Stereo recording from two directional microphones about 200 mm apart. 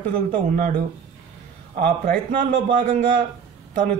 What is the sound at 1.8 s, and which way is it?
A man's voice, 45° right (ahead or behind).